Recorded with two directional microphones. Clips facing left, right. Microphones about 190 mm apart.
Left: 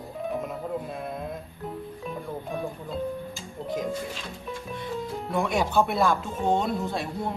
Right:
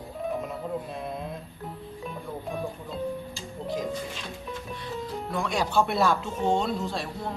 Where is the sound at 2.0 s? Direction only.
Centre (ahead or behind).